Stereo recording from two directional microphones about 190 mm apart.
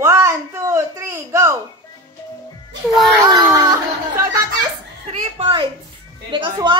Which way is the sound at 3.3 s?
20° right (ahead or behind).